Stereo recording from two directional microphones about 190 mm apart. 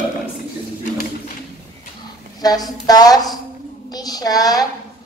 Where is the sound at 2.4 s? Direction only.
20° left (ahead or behind).